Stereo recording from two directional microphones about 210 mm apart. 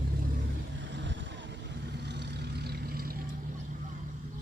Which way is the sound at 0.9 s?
60° right (ahead or behind).